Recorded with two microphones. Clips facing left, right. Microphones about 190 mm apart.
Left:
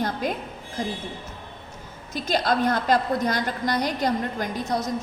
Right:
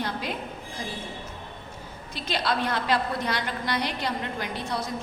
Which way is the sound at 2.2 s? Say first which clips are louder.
Left 5 dB; 45° left (ahead or behind).